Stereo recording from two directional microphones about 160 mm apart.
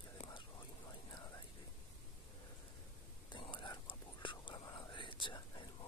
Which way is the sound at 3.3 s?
30° left (ahead or behind).